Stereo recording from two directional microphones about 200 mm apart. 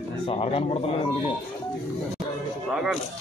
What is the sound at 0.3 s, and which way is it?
Speech, 30° left (ahead or behind).